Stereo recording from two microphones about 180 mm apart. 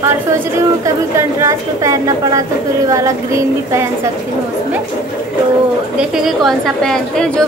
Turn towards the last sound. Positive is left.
turn(degrees=0)  # may be behind; listen again after turning